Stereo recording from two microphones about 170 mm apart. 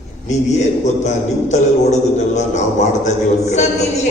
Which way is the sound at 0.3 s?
45° left (ahead or behind).